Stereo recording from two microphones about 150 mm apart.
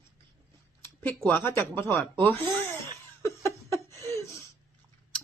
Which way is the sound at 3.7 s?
20° left (ahead or behind).